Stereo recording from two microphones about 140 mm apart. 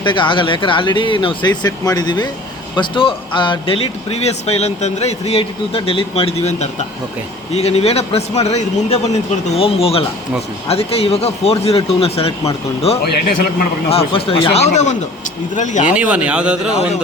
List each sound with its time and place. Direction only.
0.0 s speech: 35° left (ahead or behind)
13.2 s a man's voice: 90° left
13.9 s speech: 40° left (ahead or behind); by 16.0 s 60° left (ahead or behind)
16.0 s speech: 10° right (ahead or behind)